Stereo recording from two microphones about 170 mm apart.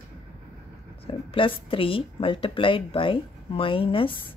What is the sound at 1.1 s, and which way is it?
Speech, 30° left (ahead or behind).